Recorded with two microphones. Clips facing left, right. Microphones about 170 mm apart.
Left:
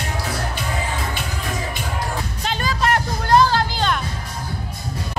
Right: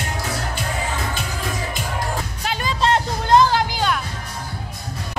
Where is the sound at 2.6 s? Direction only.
20° right (ahead or behind).